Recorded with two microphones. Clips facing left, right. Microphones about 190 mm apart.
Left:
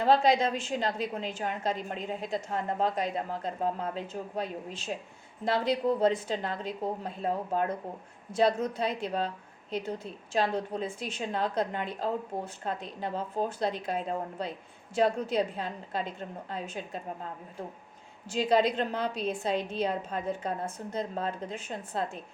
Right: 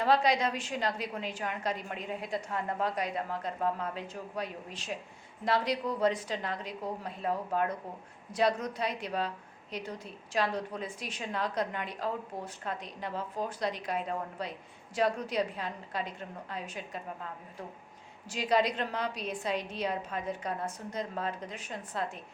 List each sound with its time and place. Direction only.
0.0 s a woman's voice: 25° left (ahead or behind)
18.3 s a woman's voice: 25° left (ahead or behind)